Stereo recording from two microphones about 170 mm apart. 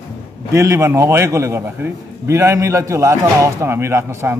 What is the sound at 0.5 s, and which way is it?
A man's voice, 15° right (ahead or behind).